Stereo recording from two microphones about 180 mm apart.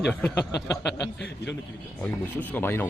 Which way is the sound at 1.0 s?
70° left (ahead or behind).